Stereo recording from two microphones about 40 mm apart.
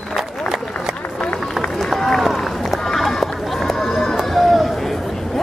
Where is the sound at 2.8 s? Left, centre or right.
Centre.